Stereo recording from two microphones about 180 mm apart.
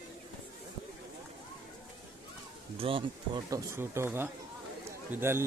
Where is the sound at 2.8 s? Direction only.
30° right (ahead or behind).